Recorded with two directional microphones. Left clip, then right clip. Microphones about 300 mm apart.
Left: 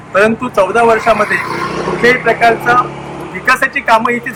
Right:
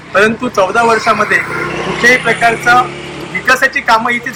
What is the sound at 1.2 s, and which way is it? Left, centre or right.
Vehicle, left.